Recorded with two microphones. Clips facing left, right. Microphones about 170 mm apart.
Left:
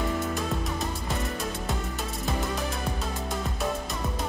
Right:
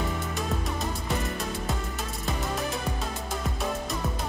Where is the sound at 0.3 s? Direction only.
Centre (ahead or behind).